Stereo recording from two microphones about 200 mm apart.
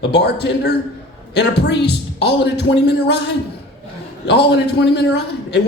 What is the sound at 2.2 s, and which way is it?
Speech, 55° left (ahead or behind).